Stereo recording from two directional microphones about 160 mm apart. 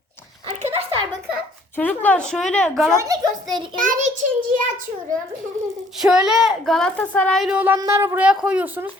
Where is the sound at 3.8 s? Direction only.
50° right (ahead or behind).